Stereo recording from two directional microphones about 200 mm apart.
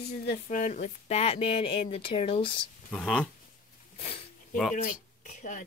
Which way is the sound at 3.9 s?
30° left (ahead or behind).